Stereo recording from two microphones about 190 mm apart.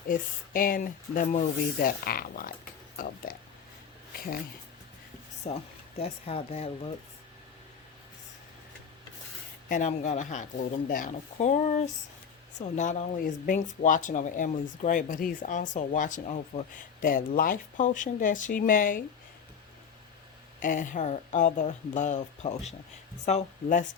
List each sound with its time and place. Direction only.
0.1 s speech: 50° left (ahead or behind)
5.5 s speech: 35° left (ahead or behind)
9.6 s speech: 40° left (ahead or behind)
20.6 s speech: 45° left (ahead or behind)